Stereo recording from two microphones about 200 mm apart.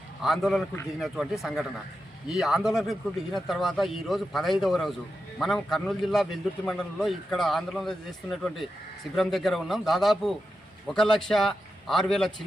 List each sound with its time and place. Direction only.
0.2 s speech: centre (ahead or behind)